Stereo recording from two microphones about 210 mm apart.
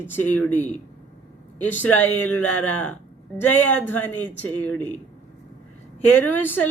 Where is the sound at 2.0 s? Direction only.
10° left (ahead or behind).